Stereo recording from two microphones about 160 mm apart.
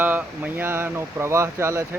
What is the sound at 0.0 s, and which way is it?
Speech, 10° right (ahead or behind).